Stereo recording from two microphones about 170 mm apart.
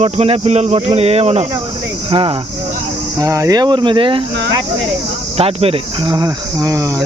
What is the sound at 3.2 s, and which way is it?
Speech, 20° right (ahead or behind).